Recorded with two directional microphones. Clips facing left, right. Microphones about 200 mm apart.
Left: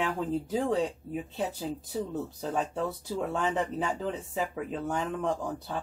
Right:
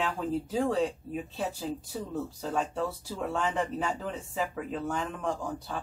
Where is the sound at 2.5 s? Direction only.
20° left (ahead or behind).